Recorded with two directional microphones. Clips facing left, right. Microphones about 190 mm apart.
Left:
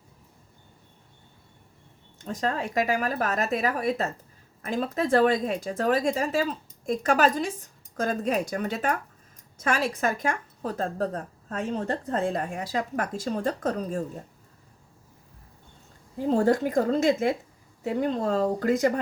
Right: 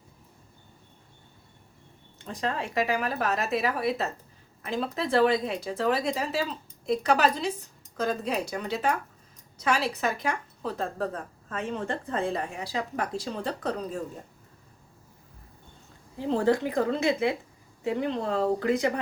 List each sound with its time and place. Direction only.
2.1 s a woman's voice: 45° left (ahead or behind)
16.1 s a woman's voice: 45° left (ahead or behind)